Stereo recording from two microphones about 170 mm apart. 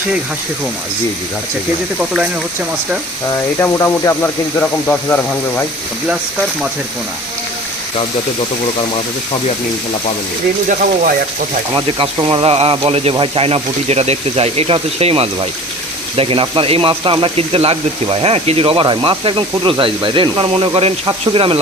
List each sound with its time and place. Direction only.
3.6 s speech: 15° left (ahead or behind)
11.7 s speech: 30° right (ahead or behind)